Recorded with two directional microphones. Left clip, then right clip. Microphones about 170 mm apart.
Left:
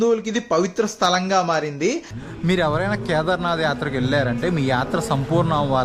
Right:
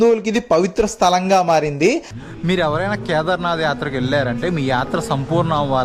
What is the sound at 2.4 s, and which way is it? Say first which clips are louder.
A man's voice: right 2 dB; centre (ahead or behind).